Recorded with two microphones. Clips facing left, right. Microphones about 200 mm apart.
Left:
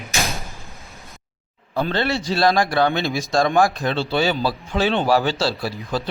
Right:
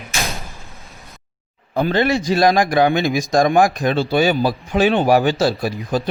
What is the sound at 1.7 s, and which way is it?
A man's voice, 15° right (ahead or behind).